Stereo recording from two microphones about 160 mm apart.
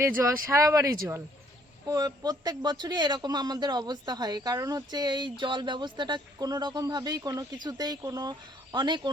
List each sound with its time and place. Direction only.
0.2 s a man's voice: 15° right (ahead or behind)